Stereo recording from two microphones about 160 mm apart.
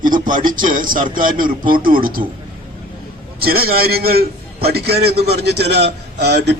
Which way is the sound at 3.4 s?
70° right (ahead or behind).